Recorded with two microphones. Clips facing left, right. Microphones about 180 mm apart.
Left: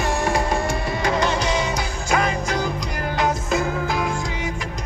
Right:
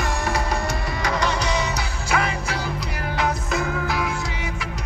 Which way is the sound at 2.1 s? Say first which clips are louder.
Left 3 dB; 45° left (ahead or behind).